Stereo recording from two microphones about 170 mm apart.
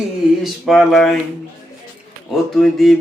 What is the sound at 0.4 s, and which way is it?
Speech, centre (ahead or behind).